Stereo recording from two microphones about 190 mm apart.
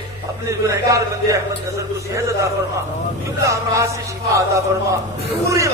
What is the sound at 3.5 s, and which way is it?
Speech, 15° right (ahead or behind).